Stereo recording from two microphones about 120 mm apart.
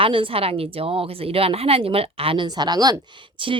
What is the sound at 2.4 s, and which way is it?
Speech, 35° right (ahead or behind).